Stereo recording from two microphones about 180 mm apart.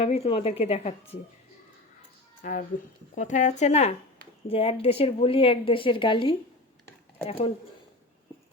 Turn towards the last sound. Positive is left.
turn(degrees=30)  # may be behind; listen again after turning